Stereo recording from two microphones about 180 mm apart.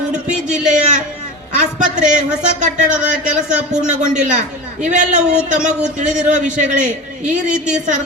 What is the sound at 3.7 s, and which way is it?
Speech, 5° right (ahead or behind).